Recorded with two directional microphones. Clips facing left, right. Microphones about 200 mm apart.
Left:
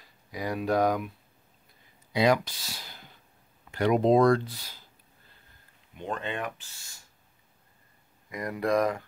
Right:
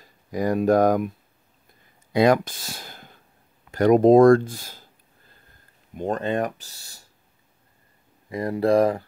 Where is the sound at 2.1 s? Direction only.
50° right (ahead or behind).